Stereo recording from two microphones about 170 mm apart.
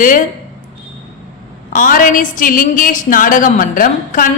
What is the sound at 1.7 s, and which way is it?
A woman's voice, 55° left (ahead or behind).